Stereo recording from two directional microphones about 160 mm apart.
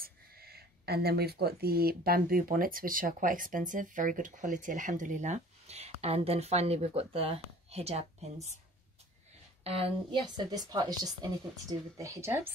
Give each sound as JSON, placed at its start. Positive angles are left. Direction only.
{"t": 0.0, "sound": "speech", "side_deg": -75}
{"t": 9.6, "sound": "a woman's voice", "side_deg": -40}